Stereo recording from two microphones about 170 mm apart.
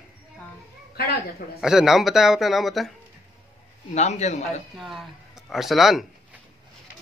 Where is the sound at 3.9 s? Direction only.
40° left (ahead or behind).